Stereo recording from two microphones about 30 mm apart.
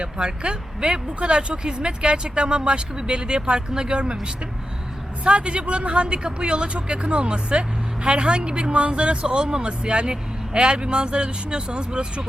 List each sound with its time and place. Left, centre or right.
0.0 s speech: right
5.2 s speech: right